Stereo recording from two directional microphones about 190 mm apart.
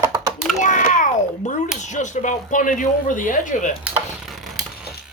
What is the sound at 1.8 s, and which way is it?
Speech, 40° left (ahead or behind).